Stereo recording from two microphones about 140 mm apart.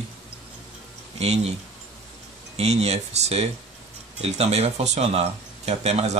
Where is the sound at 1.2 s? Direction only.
50° right (ahead or behind).